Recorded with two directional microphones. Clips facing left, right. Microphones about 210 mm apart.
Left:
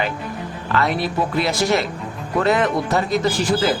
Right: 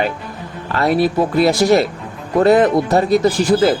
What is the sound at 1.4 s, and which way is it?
Speech, 40° right (ahead or behind).